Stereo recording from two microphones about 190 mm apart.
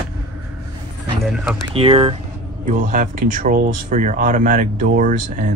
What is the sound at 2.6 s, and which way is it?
Speech, 45° right (ahead or behind).